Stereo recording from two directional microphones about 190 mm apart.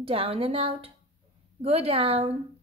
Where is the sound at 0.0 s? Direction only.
30° right (ahead or behind).